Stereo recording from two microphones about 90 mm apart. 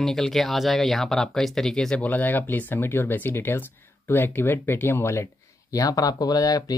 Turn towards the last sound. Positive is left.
turn(degrees=45)  # may be behind; listen again after turning